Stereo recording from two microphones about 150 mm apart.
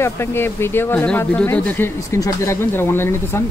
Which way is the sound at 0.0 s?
15° left (ahead or behind).